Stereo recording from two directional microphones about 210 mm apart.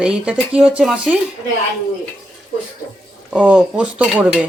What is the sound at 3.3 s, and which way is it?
Speech, 5° right (ahead or behind).